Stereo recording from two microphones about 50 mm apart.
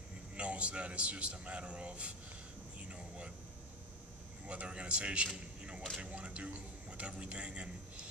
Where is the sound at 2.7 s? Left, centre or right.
Right.